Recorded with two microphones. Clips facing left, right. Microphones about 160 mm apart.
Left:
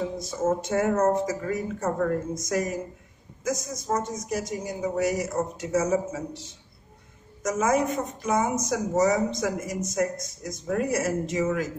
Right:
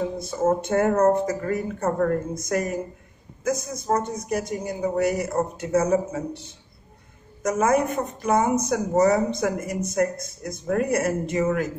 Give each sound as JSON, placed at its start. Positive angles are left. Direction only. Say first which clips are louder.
{"t": 0.2, "sound": "a woman's voice", "louder": "right 4 dB", "side_deg": -60}